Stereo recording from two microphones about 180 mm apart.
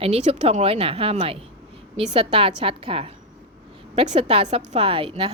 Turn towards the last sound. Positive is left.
turn(degrees=-30)  # may be behind; listen again after turning